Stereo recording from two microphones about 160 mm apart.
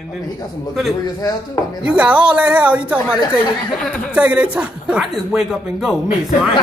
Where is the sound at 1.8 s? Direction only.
10° right (ahead or behind).